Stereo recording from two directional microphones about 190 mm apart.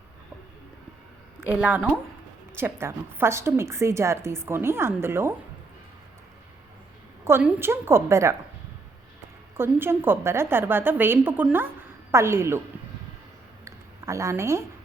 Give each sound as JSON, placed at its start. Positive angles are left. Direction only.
{"t": 1.5, "sound": "a woman's voice", "side_deg": -10}
{"t": 7.3, "sound": "a woman's voice", "side_deg": -10}
{"t": 9.6, "sound": "a woman's voice", "side_deg": -10}
{"t": 13.7, "sound": "a sound", "side_deg": -15}